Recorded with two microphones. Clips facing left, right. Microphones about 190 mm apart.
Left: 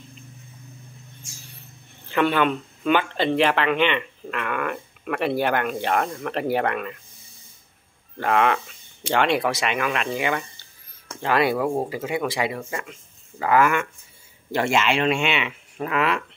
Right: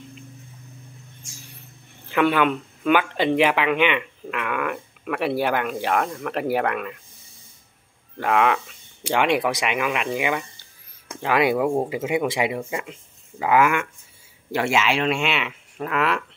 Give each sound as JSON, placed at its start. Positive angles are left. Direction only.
{"t": 2.0, "sound": "speech", "side_deg": -10}
{"t": 8.2, "sound": "speech", "side_deg": -5}